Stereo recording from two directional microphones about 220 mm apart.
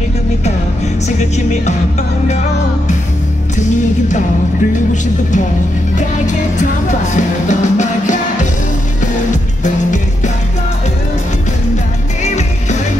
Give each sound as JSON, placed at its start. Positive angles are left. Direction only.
{"t": 1.0, "sound": "music", "side_deg": 30}
{"t": 5.9, "sound": "music", "side_deg": 35}
{"t": 9.6, "sound": "music", "side_deg": 35}
{"t": 12.2, "sound": "music", "side_deg": 30}